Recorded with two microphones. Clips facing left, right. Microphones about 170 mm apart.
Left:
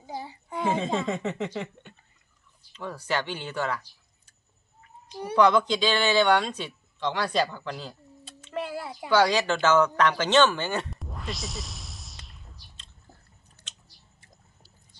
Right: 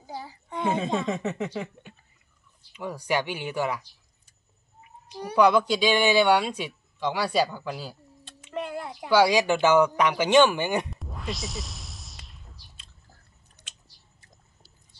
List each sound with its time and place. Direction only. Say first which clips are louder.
0.0 s a woman's voice: left 1 dB; 25° left (ahead or behind)
0.5 s speech: even; centre (ahead or behind)
5.3 s speech: right 1 dB; 10° right (ahead or behind)
8.5 s a sound: even; 5° left (ahead or behind)
9.1 s speech: right 2 dB; 10° right (ahead or behind)
10.9 s music: right 2 dB; centre (ahead or behind)
13.6 s chewing: even; 20° right (ahead or behind)